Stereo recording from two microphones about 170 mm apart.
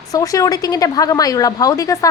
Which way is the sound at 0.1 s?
20° left (ahead or behind).